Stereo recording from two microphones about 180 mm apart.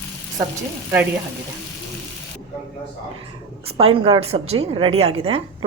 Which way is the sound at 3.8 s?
30° right (ahead or behind).